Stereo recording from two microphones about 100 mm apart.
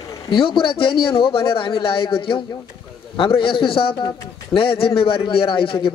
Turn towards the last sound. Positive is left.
turn(degrees=60)  # may be behind; listen again after turning